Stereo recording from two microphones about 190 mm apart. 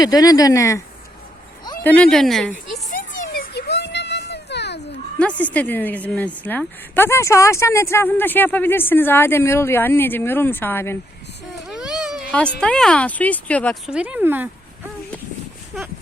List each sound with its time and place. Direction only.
0.0 s speech: 20° left (ahead or behind)
1.8 s speech: 10° left (ahead or behind)
2.9 s a sound: 45° left (ahead or behind)
3.5 s children playing: 60° left (ahead or behind)
5.2 s a woman's voice: 5° left (ahead or behind)
11.7 s baby cry: 5° right (ahead or behind)
12.3 s a woman's voice: 5° left (ahead or behind)
13.9 s speech: 5° right (ahead or behind)